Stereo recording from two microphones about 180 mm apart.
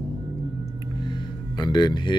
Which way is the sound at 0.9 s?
25° left (ahead or behind).